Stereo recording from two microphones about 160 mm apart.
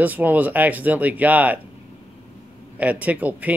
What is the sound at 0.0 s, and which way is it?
Speech, 10° right (ahead or behind).